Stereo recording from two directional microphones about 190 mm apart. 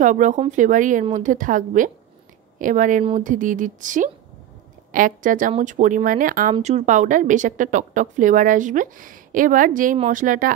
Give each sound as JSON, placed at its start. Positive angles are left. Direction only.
{"t": 0.0, "sound": "speech", "side_deg": -40}